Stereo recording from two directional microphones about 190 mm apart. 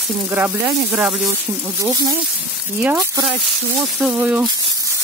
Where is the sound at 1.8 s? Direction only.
15° right (ahead or behind).